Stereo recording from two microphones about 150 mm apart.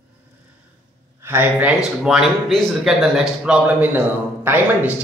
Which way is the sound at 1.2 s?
15° right (ahead or behind).